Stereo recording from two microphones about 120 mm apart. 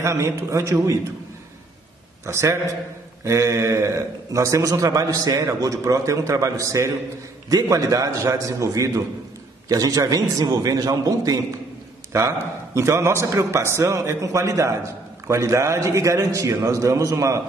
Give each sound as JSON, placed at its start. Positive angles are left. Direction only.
{"t": 0.0, "sound": "a man's voice", "side_deg": -25}
{"t": 2.2, "sound": "a man's voice", "side_deg": -25}